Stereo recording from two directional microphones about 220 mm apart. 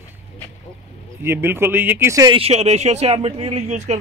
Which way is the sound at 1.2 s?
10° right (ahead or behind).